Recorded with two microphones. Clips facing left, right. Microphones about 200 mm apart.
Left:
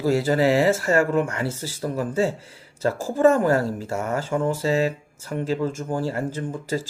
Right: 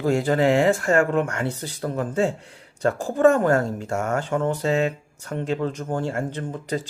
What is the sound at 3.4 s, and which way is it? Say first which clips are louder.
Speech: even; 5° left (ahead or behind).